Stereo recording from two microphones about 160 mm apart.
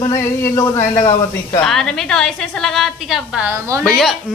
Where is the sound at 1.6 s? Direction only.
5° left (ahead or behind); by 3.8 s 20° right (ahead or behind).